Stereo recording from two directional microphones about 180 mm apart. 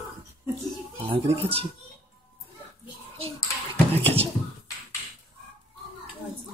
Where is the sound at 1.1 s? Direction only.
30° right (ahead or behind).